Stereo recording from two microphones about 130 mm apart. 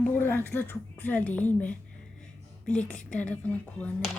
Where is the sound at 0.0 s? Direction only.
15° left (ahead or behind).